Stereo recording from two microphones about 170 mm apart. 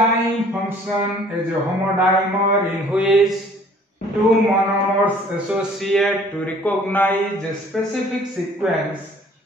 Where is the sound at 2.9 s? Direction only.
Centre (ahead or behind).